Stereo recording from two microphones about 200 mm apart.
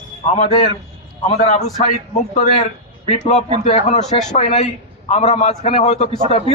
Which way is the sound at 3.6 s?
35° left (ahead or behind).